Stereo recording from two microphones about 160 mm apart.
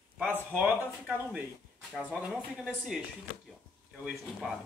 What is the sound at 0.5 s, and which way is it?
Speech, 10° right (ahead or behind).